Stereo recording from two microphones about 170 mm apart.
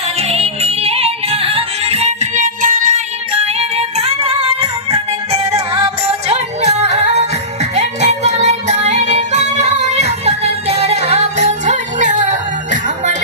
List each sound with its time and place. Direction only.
0.2 s yodeling: 35° right (ahead or behind)
5.5 s music: 35° right (ahead or behind)